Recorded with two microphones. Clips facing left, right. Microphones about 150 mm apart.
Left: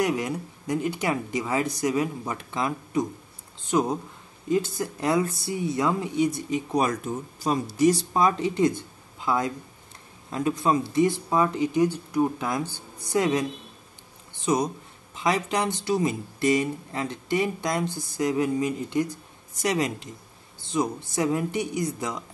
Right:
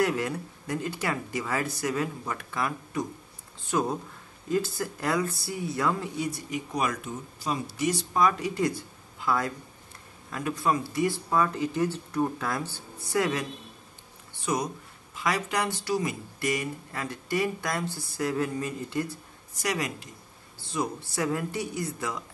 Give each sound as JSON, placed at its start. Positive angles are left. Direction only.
{"t": 0.0, "sound": "speech", "side_deg": 15}